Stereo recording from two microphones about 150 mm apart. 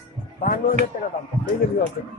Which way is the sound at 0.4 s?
65° left (ahead or behind).